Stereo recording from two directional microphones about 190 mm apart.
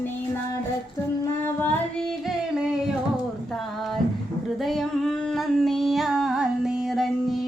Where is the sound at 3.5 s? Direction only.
Centre (ahead or behind).